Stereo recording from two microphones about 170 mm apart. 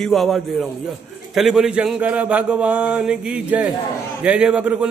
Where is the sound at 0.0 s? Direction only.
Centre (ahead or behind).